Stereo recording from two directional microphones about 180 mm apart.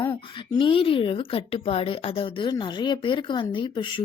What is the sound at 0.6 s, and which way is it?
Speech, 30° left (ahead or behind).